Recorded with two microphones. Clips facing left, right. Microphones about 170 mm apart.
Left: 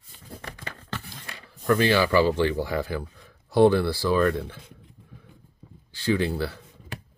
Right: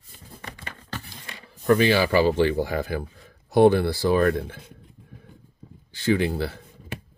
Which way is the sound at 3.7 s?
20° right (ahead or behind).